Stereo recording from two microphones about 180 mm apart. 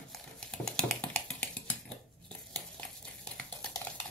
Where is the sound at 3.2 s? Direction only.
5° left (ahead or behind).